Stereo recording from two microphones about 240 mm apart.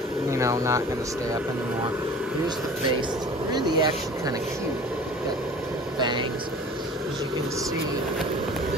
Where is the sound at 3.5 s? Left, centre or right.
Centre.